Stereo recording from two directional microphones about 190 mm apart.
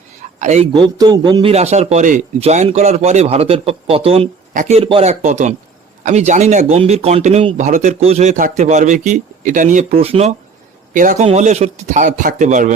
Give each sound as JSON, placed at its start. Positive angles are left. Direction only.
{"t": 0.2, "sound": "a sound", "side_deg": -40}
{"t": 0.7, "sound": "a man's voice", "side_deg": -25}
{"t": 10.9, "sound": "a man's voice", "side_deg": -45}